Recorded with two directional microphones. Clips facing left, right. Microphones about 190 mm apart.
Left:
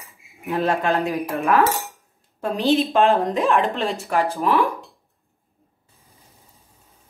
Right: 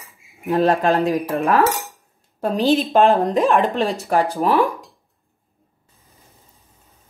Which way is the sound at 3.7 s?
35° right (ahead or behind).